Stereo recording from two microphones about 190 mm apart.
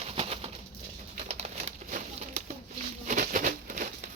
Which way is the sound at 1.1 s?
35° right (ahead or behind).